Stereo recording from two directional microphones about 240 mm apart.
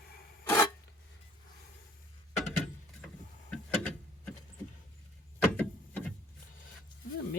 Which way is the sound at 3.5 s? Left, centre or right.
Centre.